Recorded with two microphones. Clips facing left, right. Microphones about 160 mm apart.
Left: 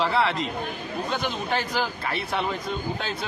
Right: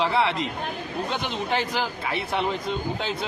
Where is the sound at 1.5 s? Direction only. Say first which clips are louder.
Right 1 dB; 15° right (ahead or behind).